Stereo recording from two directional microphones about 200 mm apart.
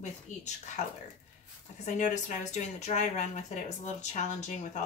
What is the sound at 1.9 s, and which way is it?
Speech, 35° left (ahead or behind).